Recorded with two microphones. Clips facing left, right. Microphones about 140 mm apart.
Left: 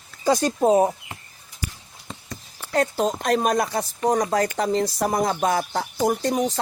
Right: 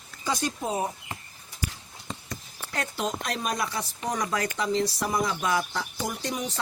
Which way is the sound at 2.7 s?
40° left (ahead or behind).